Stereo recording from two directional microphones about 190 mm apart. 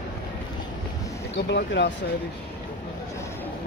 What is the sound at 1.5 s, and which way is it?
Speech, 65° left (ahead or behind).